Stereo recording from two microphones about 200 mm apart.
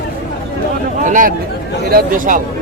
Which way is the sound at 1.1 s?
40° right (ahead or behind).